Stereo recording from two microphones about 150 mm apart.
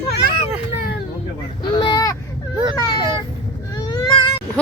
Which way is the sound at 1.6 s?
35° left (ahead or behind).